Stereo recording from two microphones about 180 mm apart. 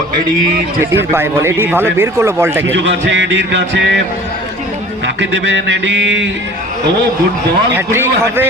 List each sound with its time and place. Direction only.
1.1 s a man's voice: 15° right (ahead or behind)
2.7 s music: 80° right
5.2 s music: 80° right
7.9 s a man's voice: 15° right (ahead or behind)